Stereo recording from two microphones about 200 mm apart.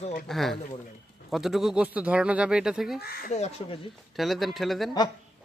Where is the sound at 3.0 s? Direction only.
50° left (ahead or behind).